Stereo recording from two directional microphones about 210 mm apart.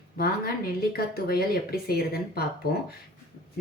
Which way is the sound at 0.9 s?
45° left (ahead or behind).